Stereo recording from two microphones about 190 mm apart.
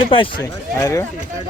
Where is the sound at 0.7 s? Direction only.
15° left (ahead or behind).